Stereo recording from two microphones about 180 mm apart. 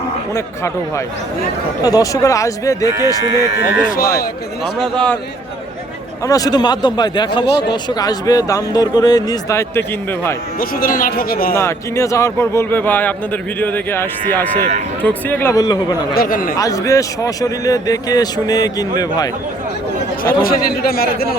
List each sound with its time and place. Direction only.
0.3 s a man's voice: 15° left (ahead or behind)
3.8 s speech: 55° left (ahead or behind)
4.8 s a man's voice: 5° left (ahead or behind)
6.2 s a man's voice: 20° left (ahead or behind)
10.6 s speech: 50° left (ahead or behind)
11.5 s a man's voice: 15° left (ahead or behind)
16.1 s speech: 50° left (ahead or behind)
16.6 s a man's voice: 20° left (ahead or behind)
20.2 s speech: 55° left (ahead or behind)